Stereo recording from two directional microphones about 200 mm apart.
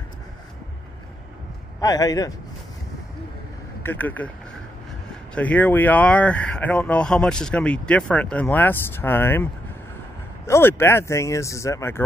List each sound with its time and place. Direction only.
1.8 s a man's voice: 20° left (ahead or behind)
3.8 s speech: 10° left (ahead or behind)
5.3 s speech: 5° left (ahead or behind)